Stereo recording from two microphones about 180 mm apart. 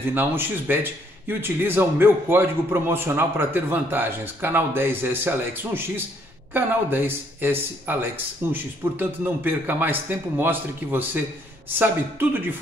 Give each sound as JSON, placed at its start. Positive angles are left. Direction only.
{"t": 0.1, "sound": "a man's voice", "side_deg": -10}